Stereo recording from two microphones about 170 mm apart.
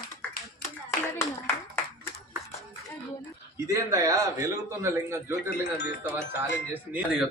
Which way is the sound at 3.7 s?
20° right (ahead or behind).